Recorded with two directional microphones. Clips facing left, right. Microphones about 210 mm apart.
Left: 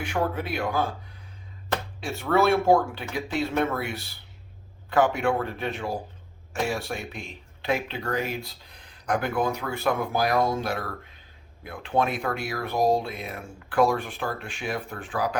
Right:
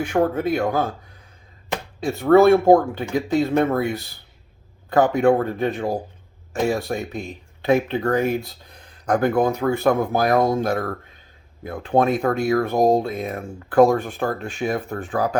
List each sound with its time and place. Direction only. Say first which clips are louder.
0.0 s speech: right 8 dB; 45° right (ahead or behind)
2.0 s speech: right 10 dB; 40° right (ahead or behind)
4.9 s speech: right 6 dB; 40° right (ahead or behind)